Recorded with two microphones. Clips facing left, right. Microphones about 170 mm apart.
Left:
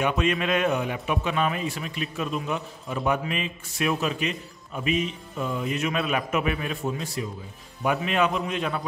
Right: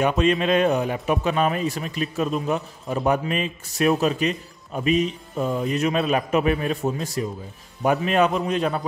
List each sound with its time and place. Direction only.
0.0 s a man's voice: 35° right (ahead or behind)